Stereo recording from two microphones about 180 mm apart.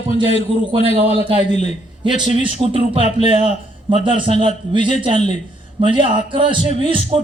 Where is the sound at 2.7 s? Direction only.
30° right (ahead or behind).